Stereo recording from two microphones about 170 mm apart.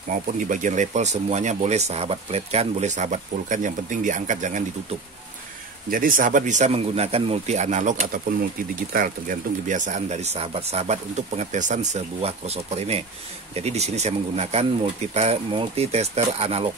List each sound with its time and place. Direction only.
0.1 s speech: 50° right (ahead or behind)
5.9 s speech: 55° right (ahead or behind); by 16.7 s 35° right (ahead or behind)